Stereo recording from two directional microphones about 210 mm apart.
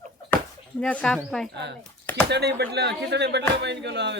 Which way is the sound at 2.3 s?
50° right (ahead or behind).